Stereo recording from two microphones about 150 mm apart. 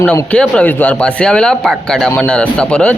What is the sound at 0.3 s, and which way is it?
A man's voice, 10° left (ahead or behind).